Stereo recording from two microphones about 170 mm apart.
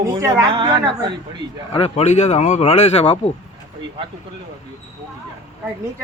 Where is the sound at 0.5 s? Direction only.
30° right (ahead or behind).